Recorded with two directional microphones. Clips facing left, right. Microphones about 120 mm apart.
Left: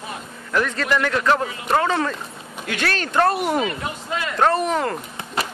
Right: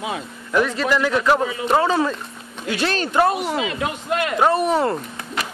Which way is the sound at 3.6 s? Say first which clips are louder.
Right 2 dB; 70° right (ahead or behind).